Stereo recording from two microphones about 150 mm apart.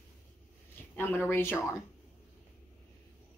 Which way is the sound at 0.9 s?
20° left (ahead or behind).